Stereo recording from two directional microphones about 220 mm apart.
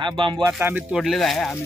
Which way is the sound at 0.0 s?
20° right (ahead or behind).